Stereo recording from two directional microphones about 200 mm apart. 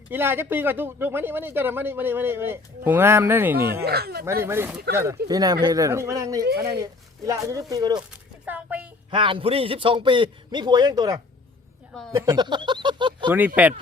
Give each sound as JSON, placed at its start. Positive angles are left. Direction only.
{"t": 0.1, "sound": "speech", "side_deg": -10}
{"t": 3.8, "sound": "speech", "side_deg": -50}
{"t": 4.4, "sound": "speech", "side_deg": -10}
{"t": 8.4, "sound": "a sound", "side_deg": -5}
{"t": 9.0, "sound": "a man's voice", "side_deg": -25}
{"t": 13.6, "sound": "speech", "side_deg": -10}